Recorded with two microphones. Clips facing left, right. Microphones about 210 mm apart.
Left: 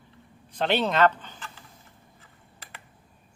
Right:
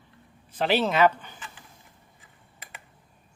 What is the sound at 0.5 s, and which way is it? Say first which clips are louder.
Speech: right 1 dB; 5° right (ahead or behind).